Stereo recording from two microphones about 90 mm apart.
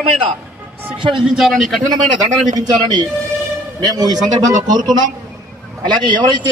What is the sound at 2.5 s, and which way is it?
Speech, 50° right (ahead or behind).